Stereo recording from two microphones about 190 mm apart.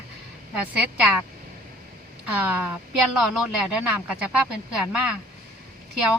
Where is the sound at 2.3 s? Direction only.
10° right (ahead or behind).